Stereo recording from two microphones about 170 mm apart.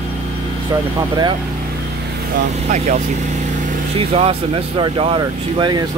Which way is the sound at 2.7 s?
45° right (ahead or behind).